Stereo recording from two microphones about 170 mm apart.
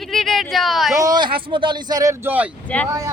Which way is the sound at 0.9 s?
20° right (ahead or behind).